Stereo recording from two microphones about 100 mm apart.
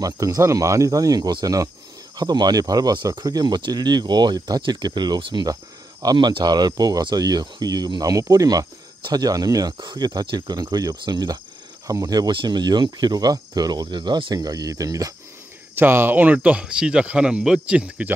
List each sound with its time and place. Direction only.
0.0 s speech: 35° right (ahead or behind)
12.3 s speech: 50° right (ahead or behind); by 15.1 s 35° right (ahead or behind)
15.7 s speech: 20° right (ahead or behind)